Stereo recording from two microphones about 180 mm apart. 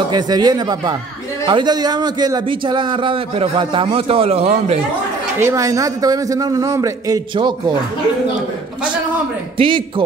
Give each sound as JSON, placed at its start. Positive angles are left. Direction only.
{"t": 0.1, "sound": "speech", "side_deg": -20}
{"t": 5.4, "sound": "speech", "side_deg": -15}
{"t": 9.6, "sound": "speech", "side_deg": -25}